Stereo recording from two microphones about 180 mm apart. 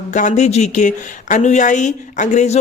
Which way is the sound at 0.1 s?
40° left (ahead or behind).